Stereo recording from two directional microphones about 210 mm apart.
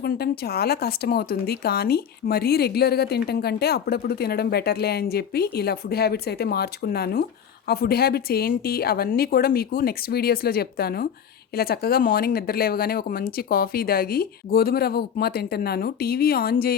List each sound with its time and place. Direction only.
0.0 s speech: 50° left (ahead or behind)